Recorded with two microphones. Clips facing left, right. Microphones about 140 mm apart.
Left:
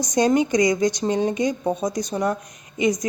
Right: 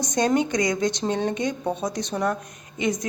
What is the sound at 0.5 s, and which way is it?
Speech, 55° right (ahead or behind).